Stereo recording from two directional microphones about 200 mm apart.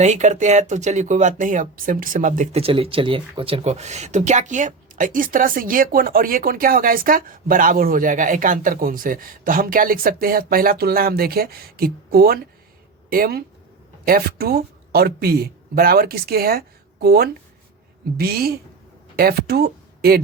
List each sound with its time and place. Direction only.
0.0 s a woman's voice: 35° right (ahead or behind); by 20.1 s 50° right (ahead or behind)